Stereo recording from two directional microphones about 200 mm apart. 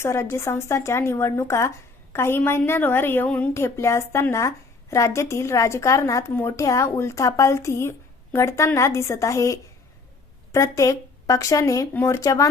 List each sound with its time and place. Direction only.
0.0 s a woman's voice: 15° left (ahead or behind)